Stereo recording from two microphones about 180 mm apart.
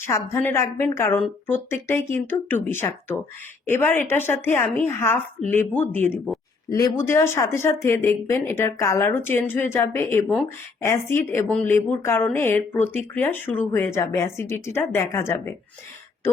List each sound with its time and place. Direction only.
0.0 s speech: 15° left (ahead or behind)